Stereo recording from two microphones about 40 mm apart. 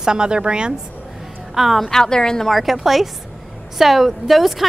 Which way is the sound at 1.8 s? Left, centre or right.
Centre.